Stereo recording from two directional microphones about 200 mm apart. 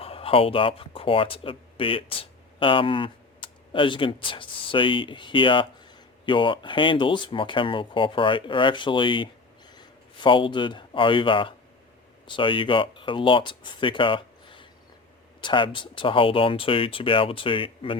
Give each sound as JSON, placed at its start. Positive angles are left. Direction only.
{"t": 0.0, "sound": "speech", "side_deg": 30}